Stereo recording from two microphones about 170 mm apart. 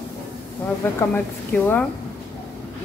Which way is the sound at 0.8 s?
10° left (ahead or behind).